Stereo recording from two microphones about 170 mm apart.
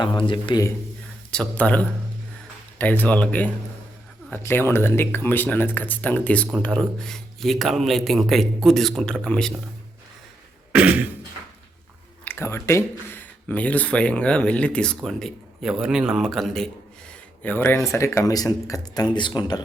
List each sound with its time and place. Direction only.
0.0 s speech: 25° left (ahead or behind)
1.3 s speech: 5° left (ahead or behind)
10.7 s beatboxing: 10° right (ahead or behind)
12.2 s speech: 15° left (ahead or behind)